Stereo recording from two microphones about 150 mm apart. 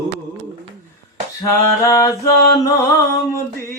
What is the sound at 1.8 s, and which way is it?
Mantra, 20° left (ahead or behind).